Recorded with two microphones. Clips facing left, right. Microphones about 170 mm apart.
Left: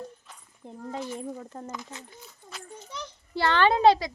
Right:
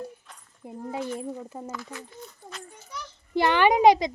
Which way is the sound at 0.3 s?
Centre (ahead or behind).